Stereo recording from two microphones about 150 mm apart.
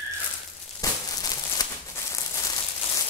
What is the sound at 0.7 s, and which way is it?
Crumpling, 25° left (ahead or behind).